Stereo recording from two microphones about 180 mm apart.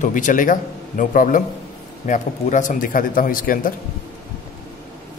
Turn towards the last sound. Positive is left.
turn(degrees=50)  # may be behind; listen again after turning